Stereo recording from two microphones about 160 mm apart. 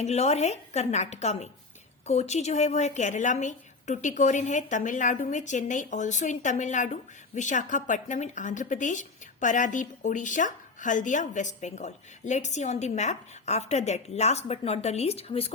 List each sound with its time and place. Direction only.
0.0 s a woman's voice: 40° left (ahead or behind)